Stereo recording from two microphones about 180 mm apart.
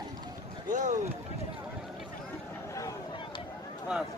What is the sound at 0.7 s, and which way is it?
Speech, 45° right (ahead or behind).